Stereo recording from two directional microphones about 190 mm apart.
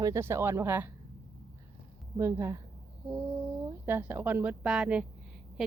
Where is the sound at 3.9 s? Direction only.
10° right (ahead or behind).